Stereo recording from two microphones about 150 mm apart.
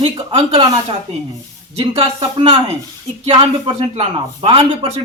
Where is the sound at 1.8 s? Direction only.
40° right (ahead or behind).